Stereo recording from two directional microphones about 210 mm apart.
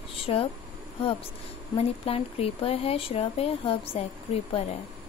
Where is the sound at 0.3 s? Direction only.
25° left (ahead or behind).